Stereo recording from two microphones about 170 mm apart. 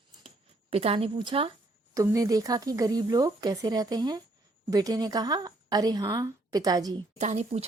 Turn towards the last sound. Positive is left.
turn(degrees=-40)  # may be behind; listen again after turning